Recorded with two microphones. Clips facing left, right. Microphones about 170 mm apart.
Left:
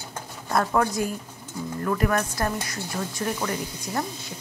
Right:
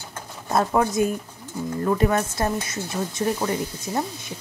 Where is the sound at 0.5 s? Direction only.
20° right (ahead or behind).